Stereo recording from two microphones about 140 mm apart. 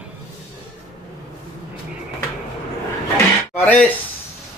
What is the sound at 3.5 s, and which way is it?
Speech, 10° left (ahead or behind).